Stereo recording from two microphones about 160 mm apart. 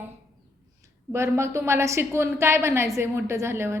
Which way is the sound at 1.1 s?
15° right (ahead or behind).